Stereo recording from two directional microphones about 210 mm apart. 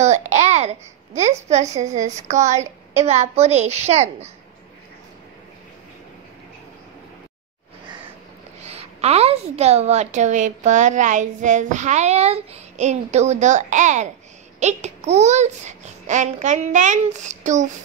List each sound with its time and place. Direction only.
0.0 s babbling: 35° right (ahead or behind)
1.8 s a woman's voice: 35° right (ahead or behind)
8.6 s a woman's voice: 30° right (ahead or behind)